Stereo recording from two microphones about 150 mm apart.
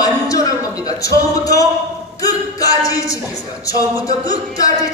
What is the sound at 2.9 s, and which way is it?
A man's voice, 20° left (ahead or behind).